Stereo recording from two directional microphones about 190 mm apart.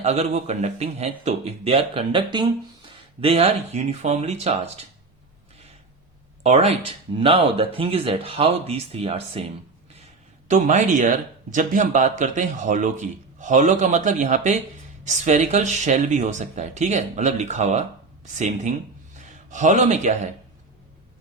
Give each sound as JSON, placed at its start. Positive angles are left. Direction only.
{"t": 0.0, "sound": "a man's voice", "side_deg": -35}
{"t": 6.4, "sound": "speech", "side_deg": -35}
{"t": 10.5, "sound": "a man's voice", "side_deg": -40}